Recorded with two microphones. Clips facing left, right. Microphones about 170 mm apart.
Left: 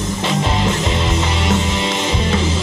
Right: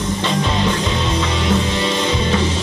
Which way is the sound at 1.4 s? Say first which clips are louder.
Right 1 dB; 90° left.